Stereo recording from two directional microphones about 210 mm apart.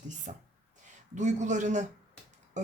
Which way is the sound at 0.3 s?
35° right (ahead or behind).